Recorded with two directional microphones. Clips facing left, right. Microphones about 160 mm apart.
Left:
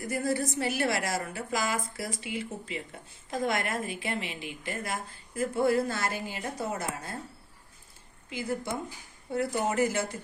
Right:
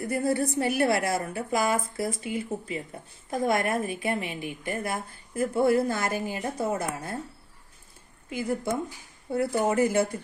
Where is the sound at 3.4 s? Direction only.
50° right (ahead or behind).